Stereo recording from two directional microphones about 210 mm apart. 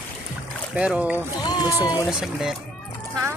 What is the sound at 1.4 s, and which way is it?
Speech, 20° left (ahead or behind).